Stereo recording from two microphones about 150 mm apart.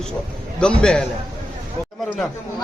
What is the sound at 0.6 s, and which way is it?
Speech, 5° left (ahead or behind).